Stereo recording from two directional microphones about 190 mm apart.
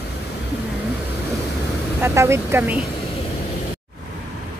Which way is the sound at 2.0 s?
15° right (ahead or behind).